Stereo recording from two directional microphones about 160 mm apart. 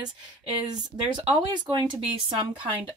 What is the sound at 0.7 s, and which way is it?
Speech, 25° right (ahead or behind).